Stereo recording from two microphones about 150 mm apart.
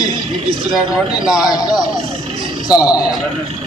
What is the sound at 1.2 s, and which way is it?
Speech, 5° right (ahead or behind).